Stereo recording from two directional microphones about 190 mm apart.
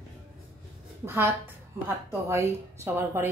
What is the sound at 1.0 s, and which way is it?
Speech, 10° right (ahead or behind).